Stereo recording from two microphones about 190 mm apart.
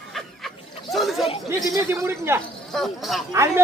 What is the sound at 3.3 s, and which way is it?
Speech, 15° right (ahead or behind).